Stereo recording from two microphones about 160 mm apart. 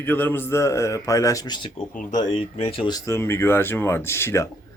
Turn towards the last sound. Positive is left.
turn(degrees=15)  # may be behind; listen again after turning